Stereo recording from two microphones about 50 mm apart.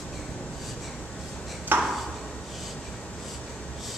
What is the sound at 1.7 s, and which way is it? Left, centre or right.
Ping, right.